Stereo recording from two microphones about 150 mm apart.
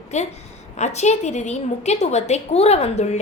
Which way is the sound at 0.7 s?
50° left (ahead or behind).